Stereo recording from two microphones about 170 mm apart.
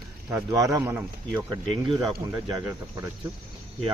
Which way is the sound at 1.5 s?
30° right (ahead or behind).